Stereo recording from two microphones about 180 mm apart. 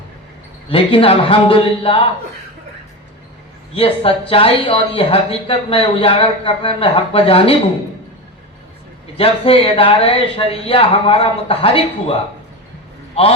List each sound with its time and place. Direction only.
0.7 s a man's voice: 30° left (ahead or behind)
3.8 s speech: 30° left (ahead or behind)
9.1 s speech: 30° left (ahead or behind)